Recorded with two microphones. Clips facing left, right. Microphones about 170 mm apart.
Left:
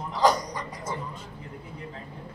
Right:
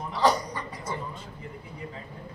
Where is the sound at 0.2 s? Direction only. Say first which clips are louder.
Left 1 dB; 15° left (ahead or behind).